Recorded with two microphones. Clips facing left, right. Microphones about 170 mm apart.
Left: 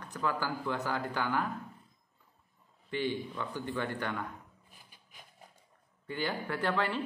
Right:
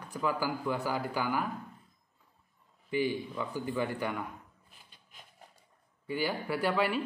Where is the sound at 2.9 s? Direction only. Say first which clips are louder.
Right 3 dB; 10° right (ahead or behind).